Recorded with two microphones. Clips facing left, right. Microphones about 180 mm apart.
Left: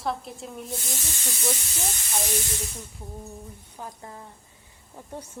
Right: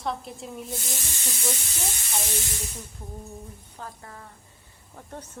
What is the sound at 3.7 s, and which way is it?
Speech, 20° left (ahead or behind).